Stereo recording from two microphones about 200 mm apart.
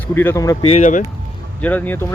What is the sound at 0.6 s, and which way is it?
Speech, 30° left (ahead or behind).